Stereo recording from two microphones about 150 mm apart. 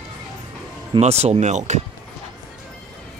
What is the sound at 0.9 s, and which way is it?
Speech, 45° right (ahead or behind).